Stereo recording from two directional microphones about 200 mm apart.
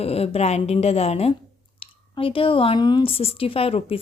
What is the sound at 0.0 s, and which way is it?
A woman's voice, 30° left (ahead or behind).